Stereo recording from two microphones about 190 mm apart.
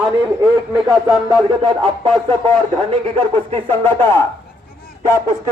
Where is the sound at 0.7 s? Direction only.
20° right (ahead or behind).